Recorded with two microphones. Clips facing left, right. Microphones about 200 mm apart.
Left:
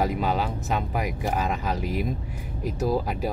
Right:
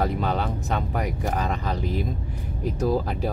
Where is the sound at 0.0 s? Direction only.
5° left (ahead or behind).